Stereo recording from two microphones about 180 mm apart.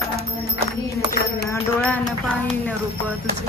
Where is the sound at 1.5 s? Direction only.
10° left (ahead or behind).